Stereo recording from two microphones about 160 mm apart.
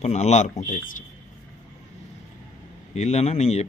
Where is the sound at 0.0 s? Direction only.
45° left (ahead or behind).